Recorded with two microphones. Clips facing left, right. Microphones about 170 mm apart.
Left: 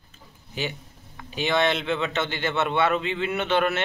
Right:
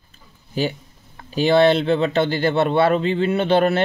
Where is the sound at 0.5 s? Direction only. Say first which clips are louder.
Right 8 dB; 35° right (ahead or behind).